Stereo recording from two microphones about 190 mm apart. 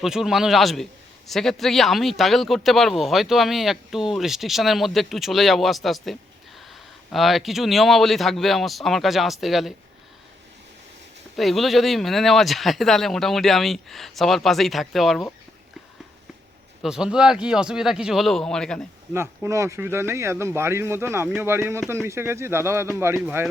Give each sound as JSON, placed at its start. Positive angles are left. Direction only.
{"t": 0.0, "sound": "speech", "side_deg": 0}
{"t": 11.3, "sound": "speech", "side_deg": 0}
{"t": 16.8, "sound": "speech", "side_deg": -5}
{"t": 19.1, "sound": "speech", "side_deg": -15}